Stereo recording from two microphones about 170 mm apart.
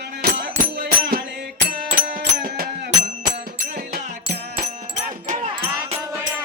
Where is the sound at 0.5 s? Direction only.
60° right (ahead or behind).